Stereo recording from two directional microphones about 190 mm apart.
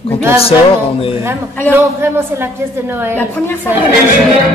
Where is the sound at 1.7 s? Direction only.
10° right (ahead or behind).